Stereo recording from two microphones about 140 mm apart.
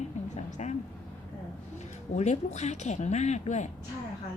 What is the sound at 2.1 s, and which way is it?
A woman's voice, 55° left (ahead or behind).